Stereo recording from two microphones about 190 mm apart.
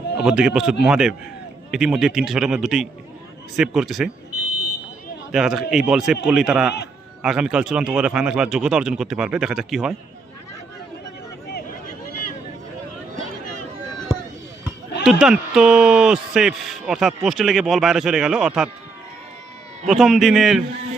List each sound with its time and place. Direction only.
0.2 s speech: 5° right (ahead or behind)
5.3 s speech: 5° right (ahead or behind)
15.0 s speech: 5° right (ahead or behind)
19.9 s speech: centre (ahead or behind)